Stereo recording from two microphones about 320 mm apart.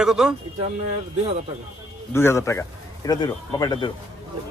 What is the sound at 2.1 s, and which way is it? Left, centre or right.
Speech, centre.